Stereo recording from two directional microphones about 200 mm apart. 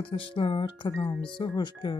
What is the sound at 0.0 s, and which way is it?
Speech, 25° left (ahead or behind).